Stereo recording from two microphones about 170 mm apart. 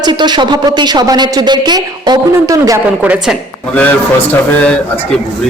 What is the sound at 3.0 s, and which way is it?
Speech, 10° right (ahead or behind).